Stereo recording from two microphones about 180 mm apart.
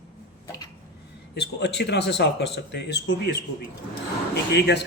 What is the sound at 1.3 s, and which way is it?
A man's voice, 65° left (ahead or behind).